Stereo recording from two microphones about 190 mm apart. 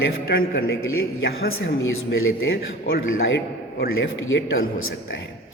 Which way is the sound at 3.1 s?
60° left (ahead or behind).